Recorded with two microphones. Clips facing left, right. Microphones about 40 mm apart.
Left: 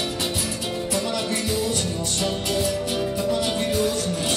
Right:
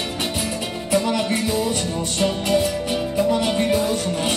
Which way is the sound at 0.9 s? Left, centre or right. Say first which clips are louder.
Right 8 dB; right.